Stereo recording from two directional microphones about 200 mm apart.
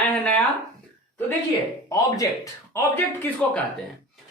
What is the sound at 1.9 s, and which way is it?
Speech, 15° left (ahead or behind).